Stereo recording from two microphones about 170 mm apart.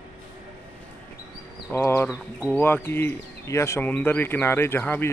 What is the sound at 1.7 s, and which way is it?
Speech, 15° left (ahead or behind).